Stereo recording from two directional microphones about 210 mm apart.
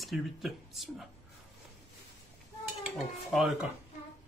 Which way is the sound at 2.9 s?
Centre (ahead or behind).